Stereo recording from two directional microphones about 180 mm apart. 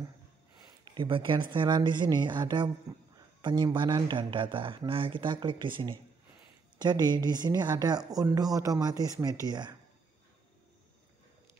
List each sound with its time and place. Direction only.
0.9 s speech: 30° right (ahead or behind)